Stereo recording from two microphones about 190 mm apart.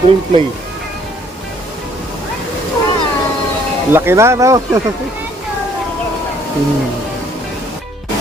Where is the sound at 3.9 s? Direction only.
15° right (ahead or behind).